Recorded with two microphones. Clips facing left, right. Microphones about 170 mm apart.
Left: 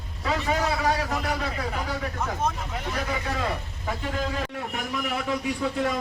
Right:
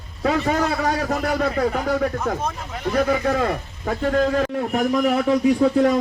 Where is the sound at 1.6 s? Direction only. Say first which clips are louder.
Right 10 dB; 45° right (ahead or behind).